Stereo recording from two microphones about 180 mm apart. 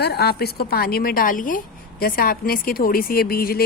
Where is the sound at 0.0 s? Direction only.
65° left (ahead or behind).